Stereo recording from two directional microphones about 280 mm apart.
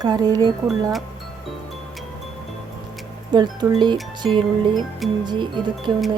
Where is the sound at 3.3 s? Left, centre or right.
Centre.